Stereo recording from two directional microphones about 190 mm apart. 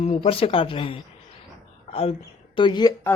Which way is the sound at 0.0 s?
30° left (ahead or behind).